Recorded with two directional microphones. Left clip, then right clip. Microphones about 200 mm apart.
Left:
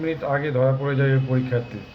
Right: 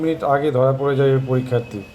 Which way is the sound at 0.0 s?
20° right (ahead or behind).